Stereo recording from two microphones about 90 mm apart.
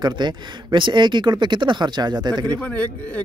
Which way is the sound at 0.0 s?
55° right (ahead or behind).